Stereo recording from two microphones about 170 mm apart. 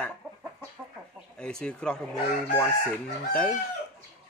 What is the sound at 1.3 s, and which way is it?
Speech, 5° left (ahead or behind).